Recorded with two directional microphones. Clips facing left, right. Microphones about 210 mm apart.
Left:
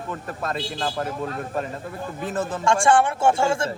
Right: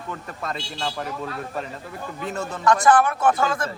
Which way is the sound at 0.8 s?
45° left (ahead or behind).